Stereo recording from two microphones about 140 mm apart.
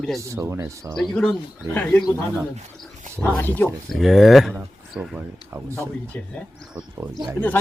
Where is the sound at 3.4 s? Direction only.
15° left (ahead or behind).